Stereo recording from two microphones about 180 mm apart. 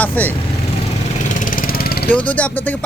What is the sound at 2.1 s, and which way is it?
Speech, 10° left (ahead or behind).